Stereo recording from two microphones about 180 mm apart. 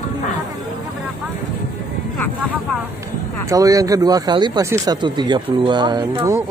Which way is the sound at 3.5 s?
20° right (ahead or behind).